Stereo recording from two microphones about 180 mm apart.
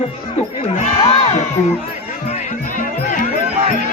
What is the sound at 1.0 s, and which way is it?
Music, 35° left (ahead or behind).